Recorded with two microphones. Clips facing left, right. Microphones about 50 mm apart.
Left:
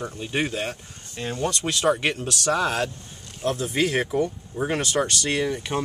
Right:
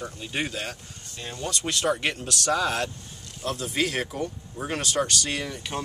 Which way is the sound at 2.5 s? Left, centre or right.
Left.